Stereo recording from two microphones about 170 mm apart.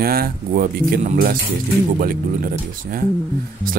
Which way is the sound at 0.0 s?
60° right (ahead or behind).